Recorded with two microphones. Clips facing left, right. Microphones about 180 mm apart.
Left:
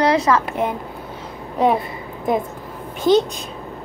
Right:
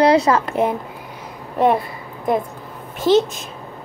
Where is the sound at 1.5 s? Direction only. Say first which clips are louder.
Right 1 dB; centre (ahead or behind).